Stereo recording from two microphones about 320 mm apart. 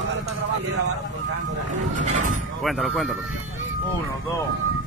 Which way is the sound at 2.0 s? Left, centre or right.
Right.